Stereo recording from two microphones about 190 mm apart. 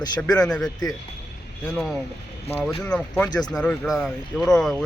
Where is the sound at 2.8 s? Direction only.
5° left (ahead or behind).